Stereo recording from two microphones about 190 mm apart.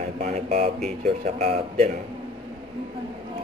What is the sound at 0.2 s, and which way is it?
Speech, 35° right (ahead or behind).